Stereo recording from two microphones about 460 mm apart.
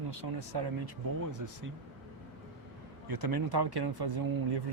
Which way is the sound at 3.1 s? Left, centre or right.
Right.